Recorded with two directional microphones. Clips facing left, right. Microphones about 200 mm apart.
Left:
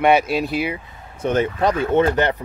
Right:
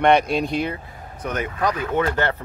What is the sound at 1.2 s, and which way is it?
Speech, 25° left (ahead or behind).